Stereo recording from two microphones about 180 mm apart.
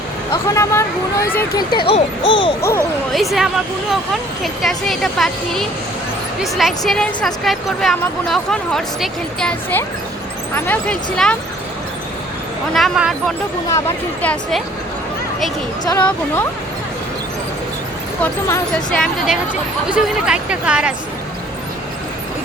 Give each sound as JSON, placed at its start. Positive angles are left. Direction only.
{"t": 0.5, "sound": "speech", "side_deg": 15}
{"t": 1.9, "sound": "speech", "side_deg": 25}
{"t": 2.6, "sound": "speech", "side_deg": 15}
{"t": 3.1, "sound": "speech", "side_deg": 0}
{"t": 12.7, "sound": "speech", "side_deg": 0}
{"t": 13.7, "sound": "speech", "side_deg": 15}
{"t": 15.8, "sound": "speech", "side_deg": 20}
{"t": 18.2, "sound": "speech", "side_deg": 15}
{"t": 18.9, "sound": "speech", "side_deg": 5}